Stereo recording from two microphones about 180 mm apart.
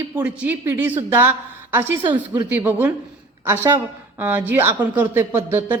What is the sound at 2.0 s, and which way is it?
Speech, 25° right (ahead or behind).